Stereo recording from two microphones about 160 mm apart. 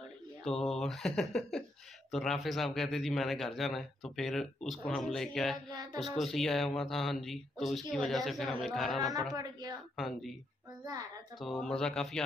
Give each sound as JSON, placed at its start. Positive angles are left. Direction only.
{"t": 0.4, "sound": "a man's voice", "side_deg": 5}
{"t": 9.3, "sound": "a woman's voice", "side_deg": -25}
{"t": 9.9, "sound": "a man's voice", "side_deg": 0}
{"t": 11.6, "sound": "a man's voice", "side_deg": 5}